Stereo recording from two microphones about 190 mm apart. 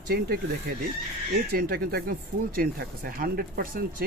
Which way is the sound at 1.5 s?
55° right (ahead or behind).